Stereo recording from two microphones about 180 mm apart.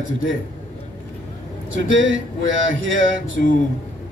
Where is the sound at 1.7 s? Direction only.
90° right.